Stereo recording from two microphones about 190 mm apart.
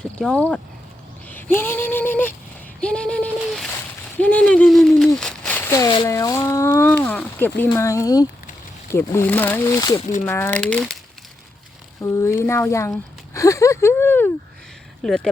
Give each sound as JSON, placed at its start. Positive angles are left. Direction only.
{"t": 0.0, "sound": "speech", "side_deg": 5}
{"t": 2.8, "sound": "a sound", "side_deg": 5}
{"t": 4.2, "sound": "speech", "side_deg": 5}
{"t": 10.0, "sound": "speech", "side_deg": 40}
{"t": 10.2, "sound": "speech", "side_deg": 10}
{"t": 12.0, "sound": "speech", "side_deg": 15}
{"t": 15.0, "sound": "a sound", "side_deg": 5}